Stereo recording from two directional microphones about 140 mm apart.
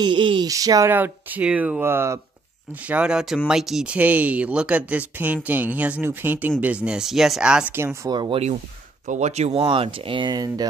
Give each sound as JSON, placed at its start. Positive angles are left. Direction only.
{"t": 0.0, "sound": "speech", "side_deg": -35}
{"t": 0.5, "sound": "speech", "side_deg": -25}
{"t": 7.7, "sound": "speech", "side_deg": -20}
{"t": 8.1, "sound": "speech", "side_deg": -30}
{"t": 9.0, "sound": "speech", "side_deg": -55}